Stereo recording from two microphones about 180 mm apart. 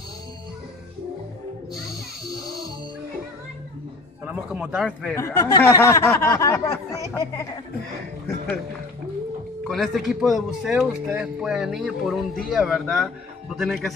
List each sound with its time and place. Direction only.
4.3 s speech: 10° right (ahead or behind)
4.8 s speech: 5° left (ahead or behind)
5.2 s speech: 15° left (ahead or behind)
9.7 s speech: centre (ahead or behind)